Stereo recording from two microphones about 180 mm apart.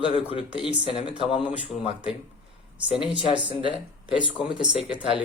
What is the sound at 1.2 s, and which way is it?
Speech, 30° left (ahead or behind).